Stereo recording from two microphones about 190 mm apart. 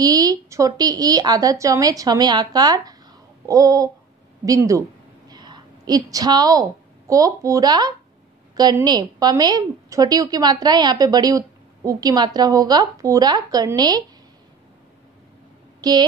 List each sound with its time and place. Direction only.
0.0 s a woman's voice: 20° right (ahead or behind)
3.4 s a sound: 15° right (ahead or behind)
5.3 s a woman's voice: 20° right (ahead or behind)
15.8 s speech: 20° right (ahead or behind)